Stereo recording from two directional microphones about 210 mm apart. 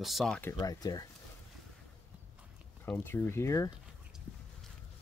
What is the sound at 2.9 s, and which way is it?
Speech, 10° left (ahead or behind).